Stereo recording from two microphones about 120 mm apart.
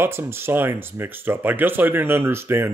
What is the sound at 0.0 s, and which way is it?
A man's voice, 20° right (ahead or behind).